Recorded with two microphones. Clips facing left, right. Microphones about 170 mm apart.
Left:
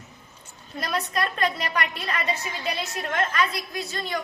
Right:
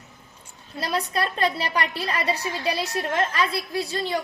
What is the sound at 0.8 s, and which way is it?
A woman's voice, 30° right (ahead or behind).